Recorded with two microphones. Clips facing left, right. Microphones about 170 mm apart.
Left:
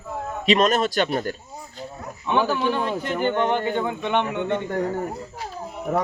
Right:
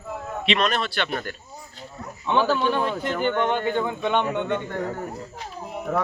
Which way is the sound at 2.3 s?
15° left (ahead or behind).